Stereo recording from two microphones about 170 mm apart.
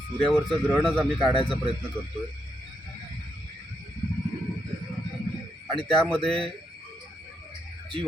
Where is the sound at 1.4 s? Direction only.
30° left (ahead or behind).